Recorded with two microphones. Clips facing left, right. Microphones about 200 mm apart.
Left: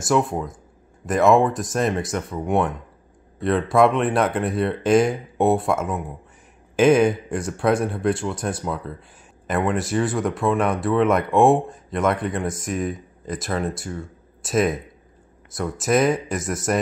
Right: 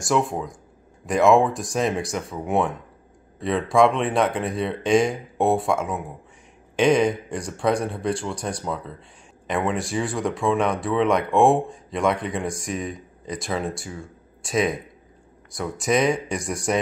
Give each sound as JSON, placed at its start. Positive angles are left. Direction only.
{"t": 0.0, "sound": "speech", "side_deg": 0}